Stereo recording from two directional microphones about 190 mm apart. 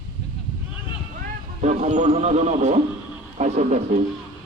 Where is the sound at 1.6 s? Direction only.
35° right (ahead or behind).